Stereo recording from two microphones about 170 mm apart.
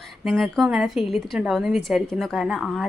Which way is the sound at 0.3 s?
Centre (ahead or behind).